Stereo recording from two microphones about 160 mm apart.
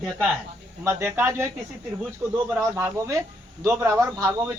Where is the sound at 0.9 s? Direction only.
15° right (ahead or behind).